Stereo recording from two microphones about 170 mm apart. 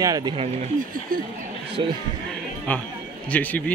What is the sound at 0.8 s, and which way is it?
Speech, 55° right (ahead or behind).